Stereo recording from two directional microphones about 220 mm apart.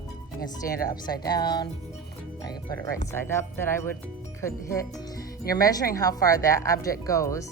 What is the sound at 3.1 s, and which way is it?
Speech, 10° left (ahead or behind).